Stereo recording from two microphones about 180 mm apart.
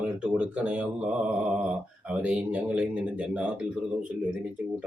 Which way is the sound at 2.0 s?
5° right (ahead or behind).